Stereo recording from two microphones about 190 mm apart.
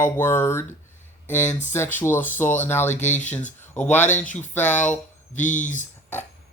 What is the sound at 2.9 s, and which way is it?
Speech, 40° left (ahead or behind).